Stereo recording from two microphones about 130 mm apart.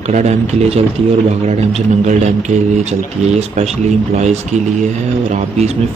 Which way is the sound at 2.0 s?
65° right (ahead or behind).